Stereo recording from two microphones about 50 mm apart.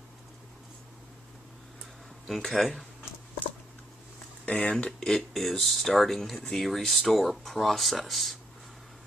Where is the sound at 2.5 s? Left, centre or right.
Centre.